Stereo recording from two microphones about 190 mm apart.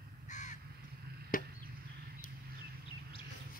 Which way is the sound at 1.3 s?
45° left (ahead or behind).